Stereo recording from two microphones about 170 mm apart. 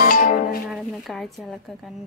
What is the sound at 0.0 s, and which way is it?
Music, 55° left (ahead or behind).